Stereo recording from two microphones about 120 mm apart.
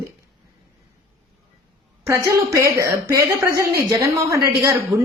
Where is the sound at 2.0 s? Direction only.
25° right (ahead or behind).